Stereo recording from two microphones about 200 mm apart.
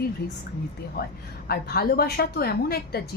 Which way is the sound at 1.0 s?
50° left (ahead or behind).